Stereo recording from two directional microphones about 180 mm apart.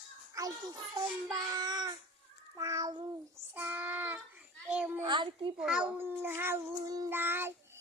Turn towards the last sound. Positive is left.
turn(degrees=-15)  # may be behind; listen again after turning